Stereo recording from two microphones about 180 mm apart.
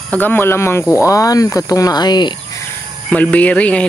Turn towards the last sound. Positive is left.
turn(degrees=5)  # may be behind; listen again after turning